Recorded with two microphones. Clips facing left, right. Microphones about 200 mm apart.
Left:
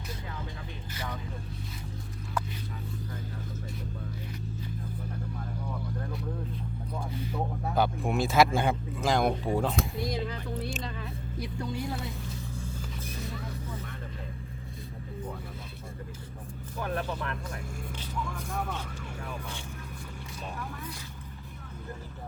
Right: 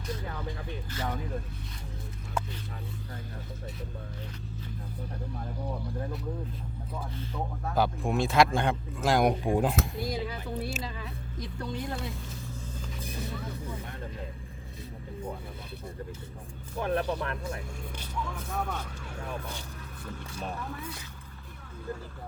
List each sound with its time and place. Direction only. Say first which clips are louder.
7.8 s speech: even; centre (ahead or behind)
9.2 s speech: right 2 dB; 15° right (ahead or behind)
11.3 s speech: left 1 dB; 10° left (ahead or behind)
16.8 s speech: right 4 dB; 35° right (ahead or behind)
18.3 s speech: right 1 dB; centre (ahead or behind)